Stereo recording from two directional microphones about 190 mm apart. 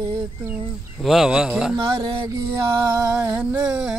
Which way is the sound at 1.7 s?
20° right (ahead or behind).